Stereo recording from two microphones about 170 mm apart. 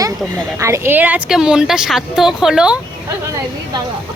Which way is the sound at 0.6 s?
15° right (ahead or behind).